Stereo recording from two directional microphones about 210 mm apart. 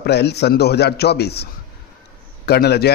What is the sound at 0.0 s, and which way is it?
Speech, 50° left (ahead or behind).